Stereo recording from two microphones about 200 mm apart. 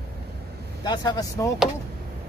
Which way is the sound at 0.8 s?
20° left (ahead or behind).